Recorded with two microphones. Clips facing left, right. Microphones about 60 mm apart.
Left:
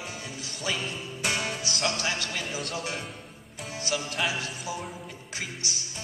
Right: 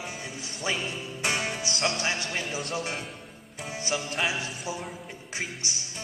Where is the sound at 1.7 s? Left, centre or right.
Centre.